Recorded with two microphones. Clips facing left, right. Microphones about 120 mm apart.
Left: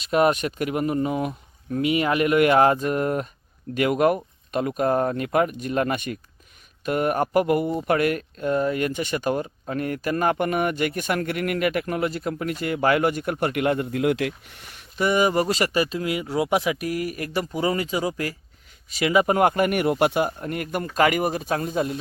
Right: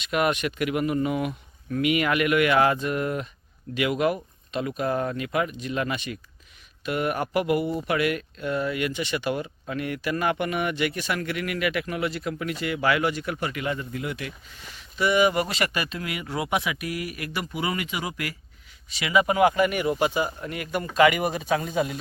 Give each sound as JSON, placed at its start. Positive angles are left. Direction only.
{"t": 0.0, "sound": "speech", "side_deg": 35}
{"t": 18.9, "sound": "speech", "side_deg": 45}
{"t": 20.4, "sound": "speech", "side_deg": 45}